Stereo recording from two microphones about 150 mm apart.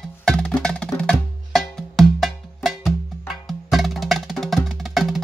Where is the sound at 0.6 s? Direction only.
5° left (ahead or behind).